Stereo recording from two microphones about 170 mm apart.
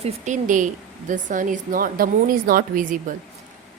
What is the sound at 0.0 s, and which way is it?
Speech, 50° right (ahead or behind).